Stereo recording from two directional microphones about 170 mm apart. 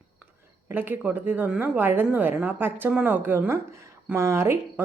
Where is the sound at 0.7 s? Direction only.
10° right (ahead or behind).